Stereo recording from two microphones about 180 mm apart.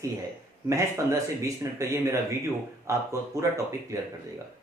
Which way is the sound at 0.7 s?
15° right (ahead or behind).